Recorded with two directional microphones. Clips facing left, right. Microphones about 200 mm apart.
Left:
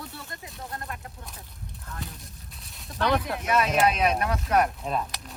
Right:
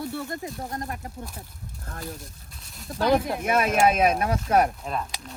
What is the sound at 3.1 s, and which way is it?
Speech, 45° right (ahead or behind).